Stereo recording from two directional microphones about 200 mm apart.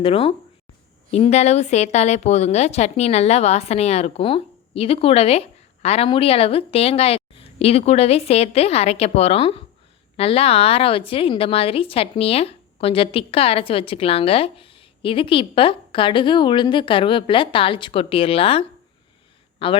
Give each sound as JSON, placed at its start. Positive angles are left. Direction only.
{"t": 0.0, "sound": "a woman's voice", "side_deg": 30}